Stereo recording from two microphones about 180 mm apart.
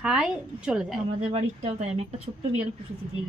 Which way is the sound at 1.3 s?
35° right (ahead or behind).